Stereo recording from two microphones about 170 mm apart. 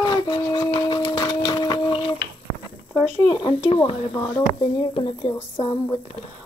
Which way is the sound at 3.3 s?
25° left (ahead or behind).